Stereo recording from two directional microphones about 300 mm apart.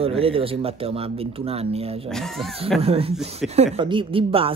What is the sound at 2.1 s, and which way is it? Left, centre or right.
Speech, centre.